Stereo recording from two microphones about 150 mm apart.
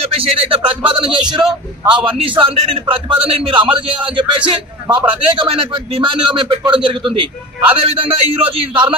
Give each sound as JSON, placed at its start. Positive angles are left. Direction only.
{"t": 0.0, "sound": "a man's voice", "side_deg": -40}